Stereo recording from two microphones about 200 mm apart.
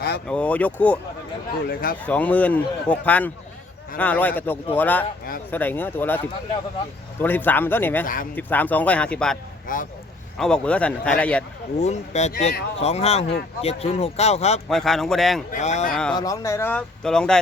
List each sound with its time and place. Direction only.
0.3 s speech: 5° left (ahead or behind)
1.6 s speech: 45° left (ahead or behind)
2.0 s speech: 5° left (ahead or behind)
8.0 s speech: 45° left (ahead or behind)
8.4 s speech: 10° left (ahead or behind)
9.7 s speech: 45° left (ahead or behind)
10.3 s speech: 5° left (ahead or behind)
11.8 s speech: 35° left (ahead or behind)
14.7 s speech: centre (ahead or behind)
15.5 s speech: 35° left (ahead or behind)
16.1 s speech: 15° left (ahead or behind)